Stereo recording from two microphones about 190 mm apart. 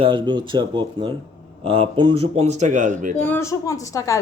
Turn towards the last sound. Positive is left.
turn(degrees=15)  # may be behind; listen again after turning